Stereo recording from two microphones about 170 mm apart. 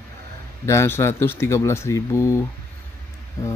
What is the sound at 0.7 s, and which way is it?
Speech, 15° left (ahead or behind).